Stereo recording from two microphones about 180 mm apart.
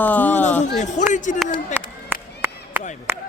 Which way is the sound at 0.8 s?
40° left (ahead or behind).